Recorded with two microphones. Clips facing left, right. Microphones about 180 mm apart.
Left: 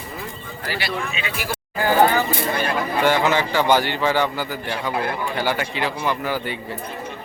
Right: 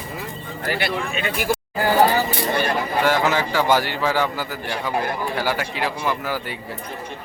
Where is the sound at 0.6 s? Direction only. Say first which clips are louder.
Right 3 dB; 50° right (ahead or behind).